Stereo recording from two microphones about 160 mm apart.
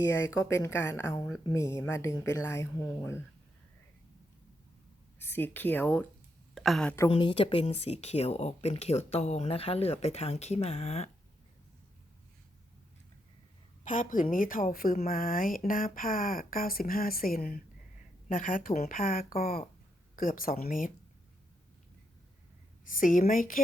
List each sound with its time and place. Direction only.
0.0 s speech: 15° left (ahead or behind)
5.2 s speech: 10° left (ahead or behind)
6.5 s a woman's voice: centre (ahead or behind)
7.1 s speech: 30° left (ahead or behind)
13.8 s a woman's voice: 55° left (ahead or behind)
22.9 s a woman's voice: 55° left (ahead or behind)